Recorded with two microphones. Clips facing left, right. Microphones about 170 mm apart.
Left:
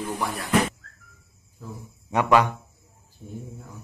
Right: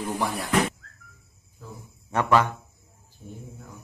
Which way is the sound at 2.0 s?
15° left (ahead or behind).